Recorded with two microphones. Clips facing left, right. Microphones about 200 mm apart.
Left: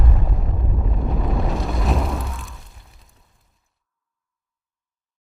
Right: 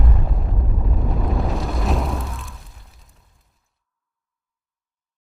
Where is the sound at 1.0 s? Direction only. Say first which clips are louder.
Even; centre (ahead or behind).